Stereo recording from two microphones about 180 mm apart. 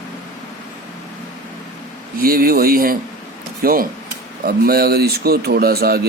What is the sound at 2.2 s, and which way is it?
Speech, 55° right (ahead or behind).